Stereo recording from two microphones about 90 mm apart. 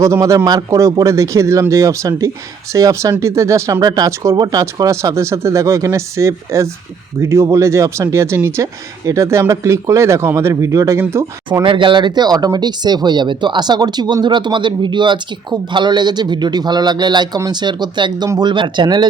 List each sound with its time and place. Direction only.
0.0 s speech: 35° right (ahead or behind)
11.6 s speech: 65° right (ahead or behind)